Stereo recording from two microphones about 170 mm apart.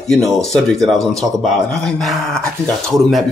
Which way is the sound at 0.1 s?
Centre (ahead or behind).